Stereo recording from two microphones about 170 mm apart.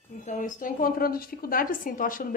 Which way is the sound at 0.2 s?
50° left (ahead or behind).